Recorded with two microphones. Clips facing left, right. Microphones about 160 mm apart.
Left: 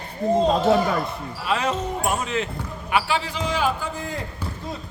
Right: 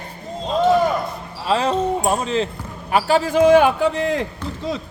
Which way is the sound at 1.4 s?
30° right (ahead or behind).